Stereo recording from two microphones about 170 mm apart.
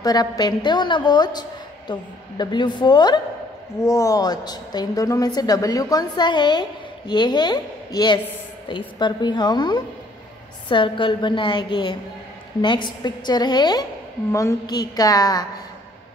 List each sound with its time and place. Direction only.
0.0 s a woman's voice: 25° left (ahead or behind)